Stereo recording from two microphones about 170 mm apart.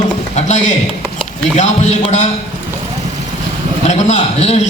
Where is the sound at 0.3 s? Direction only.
45° left (ahead or behind).